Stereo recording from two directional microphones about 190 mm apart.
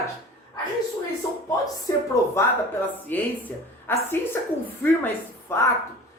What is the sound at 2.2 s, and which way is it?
A woman's voice, 15° left (ahead or behind).